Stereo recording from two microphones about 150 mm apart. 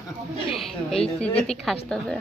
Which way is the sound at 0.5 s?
Centre (ahead or behind).